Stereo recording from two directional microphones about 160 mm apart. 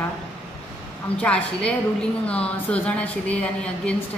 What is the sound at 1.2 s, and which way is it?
A woman's voice, 5° left (ahead or behind).